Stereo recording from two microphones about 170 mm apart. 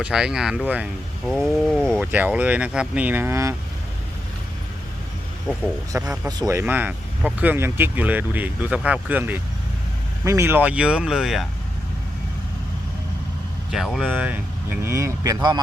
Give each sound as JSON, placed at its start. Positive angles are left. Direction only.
{"t": 0.0, "sound": "speech", "side_deg": -5}
{"t": 2.0, "sound": "speech", "side_deg": -10}
{"t": 6.2, "sound": "speech", "side_deg": -20}
{"t": 13.7, "sound": "speech", "side_deg": 0}